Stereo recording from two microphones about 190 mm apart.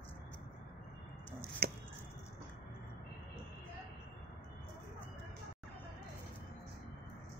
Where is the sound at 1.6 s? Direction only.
55° right (ahead or behind).